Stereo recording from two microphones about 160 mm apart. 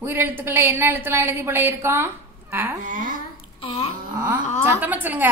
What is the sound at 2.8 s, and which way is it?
Speech, 55° right (ahead or behind).